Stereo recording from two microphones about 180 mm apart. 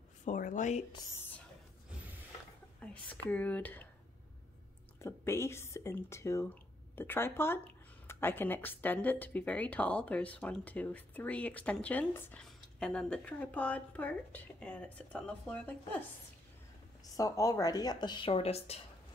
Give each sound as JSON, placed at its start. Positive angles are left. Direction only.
{"t": 0.2, "sound": "a sound", "side_deg": 45}
{"t": 2.8, "sound": "speech", "side_deg": 10}
{"t": 4.9, "sound": "speech", "side_deg": 15}
{"t": 17.2, "sound": "speech", "side_deg": 20}